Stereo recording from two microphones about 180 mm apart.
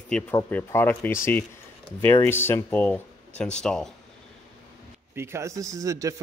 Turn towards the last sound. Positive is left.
turn(degrees=-20)  # may be behind; listen again after turning